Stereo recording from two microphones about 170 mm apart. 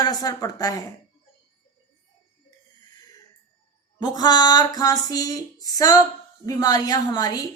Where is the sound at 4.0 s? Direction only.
25° left (ahead or behind).